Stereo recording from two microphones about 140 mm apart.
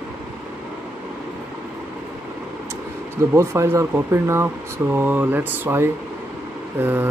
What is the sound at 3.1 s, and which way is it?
Speech, 20° right (ahead or behind).